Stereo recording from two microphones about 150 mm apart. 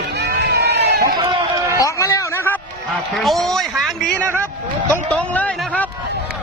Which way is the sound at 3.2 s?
Centre (ahead or behind).